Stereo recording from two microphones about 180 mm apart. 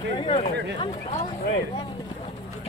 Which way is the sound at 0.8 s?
35° left (ahead or behind).